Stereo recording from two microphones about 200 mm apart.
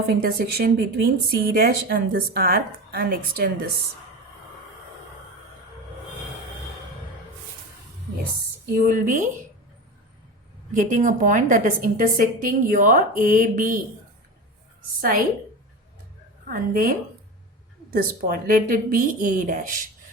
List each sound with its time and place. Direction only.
0.1 s speech: 50° right (ahead or behind)
8.7 s a woman's voice: 40° right (ahead or behind)
10.8 s a woman's voice: 40° right (ahead or behind)
16.5 s speech: 45° right (ahead or behind)